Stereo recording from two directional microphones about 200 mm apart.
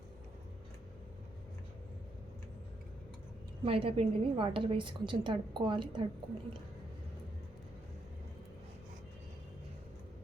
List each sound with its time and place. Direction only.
3.6 s a woman's voice: 30° right (ahead or behind)